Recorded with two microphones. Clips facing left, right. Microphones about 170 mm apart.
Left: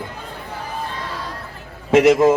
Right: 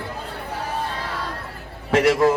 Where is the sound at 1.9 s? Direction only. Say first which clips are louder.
Left 4 dB; 20° left (ahead or behind).